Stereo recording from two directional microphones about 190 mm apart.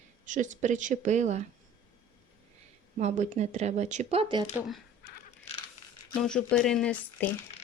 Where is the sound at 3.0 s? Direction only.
35° right (ahead or behind).